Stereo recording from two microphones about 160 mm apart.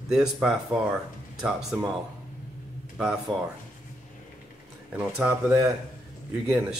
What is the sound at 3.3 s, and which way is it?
Speech, 30° right (ahead or behind).